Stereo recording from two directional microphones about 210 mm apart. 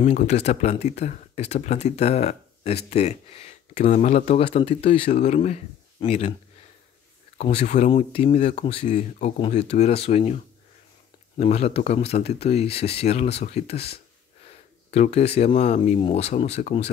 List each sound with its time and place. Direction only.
0.0 s speech: 30° left (ahead or behind)
7.3 s speech: 30° left (ahead or behind)